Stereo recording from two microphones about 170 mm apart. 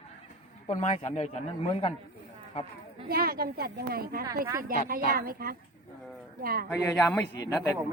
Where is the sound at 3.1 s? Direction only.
60° right (ahead or behind).